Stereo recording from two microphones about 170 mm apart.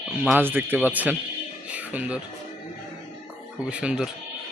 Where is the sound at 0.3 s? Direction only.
10° right (ahead or behind).